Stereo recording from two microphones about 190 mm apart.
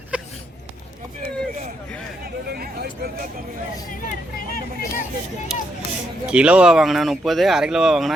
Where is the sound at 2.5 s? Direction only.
55° right (ahead or behind).